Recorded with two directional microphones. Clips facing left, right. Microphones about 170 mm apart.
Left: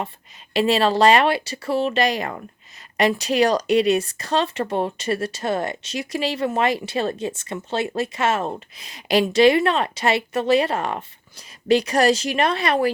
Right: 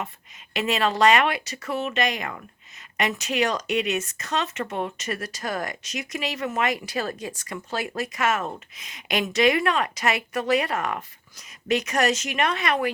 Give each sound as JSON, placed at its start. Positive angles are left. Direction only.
{"t": 0.5, "sound": "speech", "side_deg": 30}